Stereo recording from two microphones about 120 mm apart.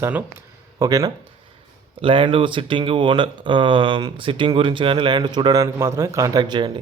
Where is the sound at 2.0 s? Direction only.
45° right (ahead or behind).